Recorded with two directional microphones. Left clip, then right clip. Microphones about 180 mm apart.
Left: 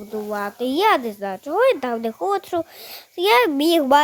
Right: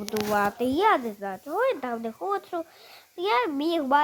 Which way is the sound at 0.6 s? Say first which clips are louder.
Left 9 dB; 40° left (ahead or behind).